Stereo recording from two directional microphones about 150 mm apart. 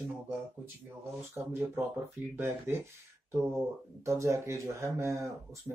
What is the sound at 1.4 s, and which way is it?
Speech, 15° right (ahead or behind).